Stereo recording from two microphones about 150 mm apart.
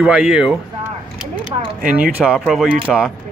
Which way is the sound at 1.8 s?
5° right (ahead or behind).